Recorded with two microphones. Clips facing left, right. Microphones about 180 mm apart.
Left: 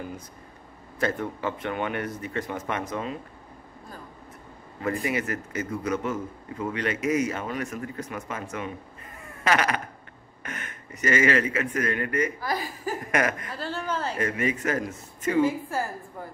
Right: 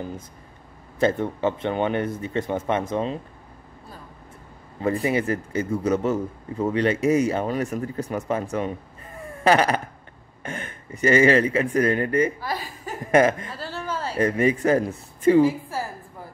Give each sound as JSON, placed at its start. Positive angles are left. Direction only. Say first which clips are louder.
{"t": 0.9, "sound": "speech", "louder": "right 6 dB", "side_deg": -25}
{"t": 4.8, "sound": "a man's voice", "louder": "right 5 dB", "side_deg": -30}
{"t": 12.4, "sound": "speech", "louder": "even", "side_deg": 0}
{"t": 13.0, "sound": "speech", "louder": "right 10 dB", "side_deg": -25}
{"t": 13.6, "sound": "a sound", "louder": "even", "side_deg": -5}
{"t": 14.1, "sound": "a man's voice", "louder": "right 11 dB", "side_deg": -35}